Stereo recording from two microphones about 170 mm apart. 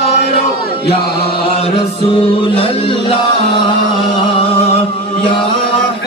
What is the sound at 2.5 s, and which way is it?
Music, 30° left (ahead or behind).